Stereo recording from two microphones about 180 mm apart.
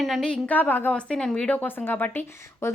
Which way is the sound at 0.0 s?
Centre (ahead or behind).